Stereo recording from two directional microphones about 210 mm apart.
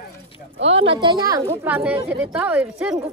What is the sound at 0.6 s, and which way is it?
A woman's voice, 25° right (ahead or behind).